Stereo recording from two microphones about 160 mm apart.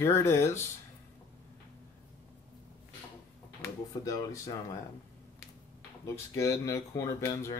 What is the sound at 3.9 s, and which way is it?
Speech, 20° left (ahead or behind).